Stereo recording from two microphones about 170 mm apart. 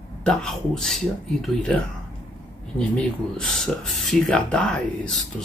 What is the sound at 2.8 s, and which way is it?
Speech, 5° left (ahead or behind).